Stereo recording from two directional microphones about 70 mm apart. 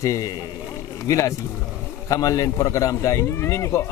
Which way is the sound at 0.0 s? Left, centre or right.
Left.